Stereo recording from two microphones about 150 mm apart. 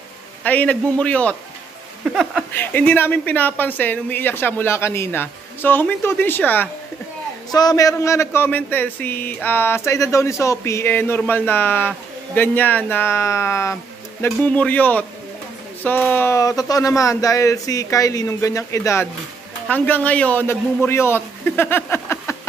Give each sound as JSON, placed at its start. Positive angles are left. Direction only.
{"t": 0.4, "sound": "speech", "side_deg": 10}
{"t": 7.5, "sound": "a man's voice", "side_deg": 25}